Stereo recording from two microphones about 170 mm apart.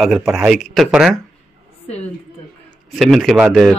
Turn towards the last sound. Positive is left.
turn(degrees=0)  # may be behind; listen again after turning